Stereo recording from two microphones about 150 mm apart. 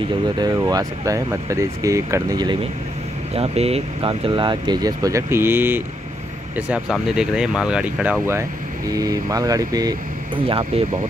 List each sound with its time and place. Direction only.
0.6 s speech: 25° right (ahead or behind)
3.3 s speech: 40° right (ahead or behind); by 10.4 s 25° right (ahead or behind)
10.4 s speech: 35° right (ahead or behind)